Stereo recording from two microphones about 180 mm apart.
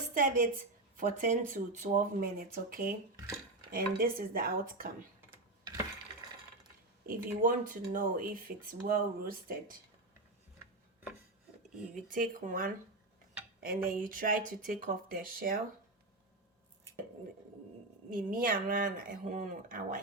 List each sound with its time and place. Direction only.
0.1 s a woman's voice: 45° right (ahead or behind)
7.0 s a woman's voice: 50° right (ahead or behind)
11.9 s a woman's voice: 50° right (ahead or behind)
18.1 s a woman's voice: 50° right (ahead or behind)